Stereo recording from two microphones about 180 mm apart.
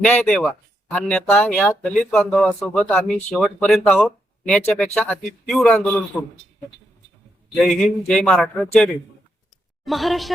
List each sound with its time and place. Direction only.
0.0 s speech: 5° left (ahead or behind)
7.5 s speech: centre (ahead or behind)